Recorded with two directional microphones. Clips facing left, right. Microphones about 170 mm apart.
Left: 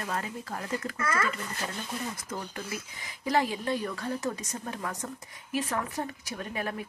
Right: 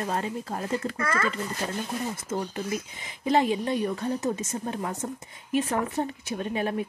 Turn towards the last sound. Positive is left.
turn(degrees=-25)  # may be behind; listen again after turning